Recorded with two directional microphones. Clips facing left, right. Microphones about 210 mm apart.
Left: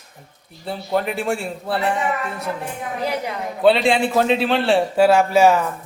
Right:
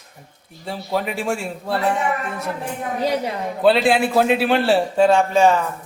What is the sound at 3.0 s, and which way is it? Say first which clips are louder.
Speech: right 3 dB; 30° right (ahead or behind).